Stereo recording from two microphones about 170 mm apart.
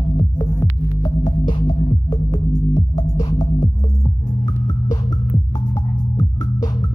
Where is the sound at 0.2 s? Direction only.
20° left (ahead or behind).